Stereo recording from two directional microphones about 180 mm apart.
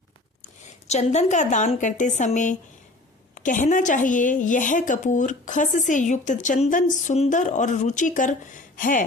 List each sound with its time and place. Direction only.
0.9 s a woman's voice: 40° left (ahead or behind)